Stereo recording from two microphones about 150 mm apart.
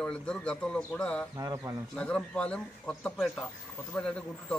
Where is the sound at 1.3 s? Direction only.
20° right (ahead or behind).